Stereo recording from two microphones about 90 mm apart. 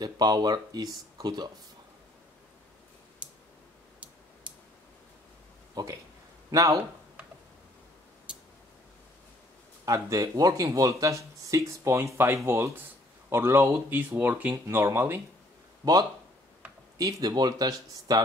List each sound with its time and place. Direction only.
0.0 s speech: 50° right (ahead or behind)
5.8 s speech: 45° right (ahead or behind)
9.8 s speech: 40° right (ahead or behind)
15.8 s speech: 45° right (ahead or behind)